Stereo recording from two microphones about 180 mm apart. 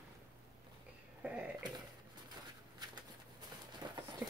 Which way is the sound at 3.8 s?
25° right (ahead or behind).